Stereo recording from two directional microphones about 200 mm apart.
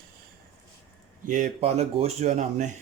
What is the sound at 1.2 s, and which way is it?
Speech, 40° right (ahead or behind).